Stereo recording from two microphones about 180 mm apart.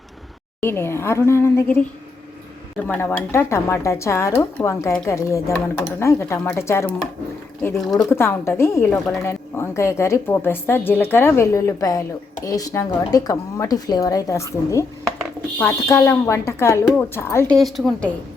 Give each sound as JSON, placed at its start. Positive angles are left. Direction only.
{"t": 0.6, "sound": "speech", "side_deg": 15}
{"t": 17.6, "sound": "a woman's voice", "side_deg": 0}